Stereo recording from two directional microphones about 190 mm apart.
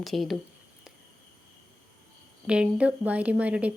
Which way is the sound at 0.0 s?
Centre (ahead or behind).